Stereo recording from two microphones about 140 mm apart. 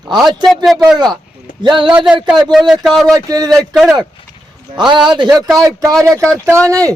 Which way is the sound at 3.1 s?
25° right (ahead or behind).